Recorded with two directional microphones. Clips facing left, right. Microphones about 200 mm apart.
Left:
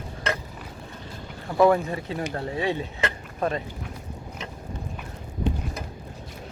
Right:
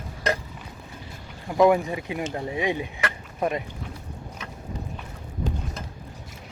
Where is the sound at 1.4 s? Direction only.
15° right (ahead or behind).